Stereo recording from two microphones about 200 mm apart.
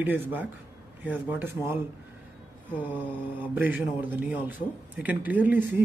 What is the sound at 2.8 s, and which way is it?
Speech, 10° right (ahead or behind).